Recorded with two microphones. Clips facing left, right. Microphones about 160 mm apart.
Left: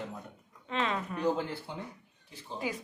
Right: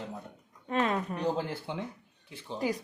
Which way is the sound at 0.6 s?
45° right (ahead or behind).